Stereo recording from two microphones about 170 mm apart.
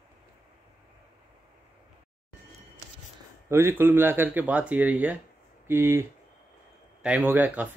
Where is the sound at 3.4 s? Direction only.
15° right (ahead or behind).